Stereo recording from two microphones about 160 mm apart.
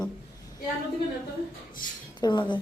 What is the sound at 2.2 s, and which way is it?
Speech, 30° left (ahead or behind).